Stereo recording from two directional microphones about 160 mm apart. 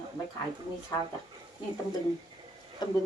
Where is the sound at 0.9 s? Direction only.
20° left (ahead or behind).